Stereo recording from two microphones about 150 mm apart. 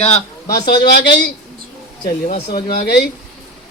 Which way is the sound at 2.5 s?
90° left.